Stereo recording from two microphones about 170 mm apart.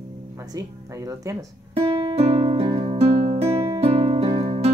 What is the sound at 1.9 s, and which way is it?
Music, 35° right (ahead or behind).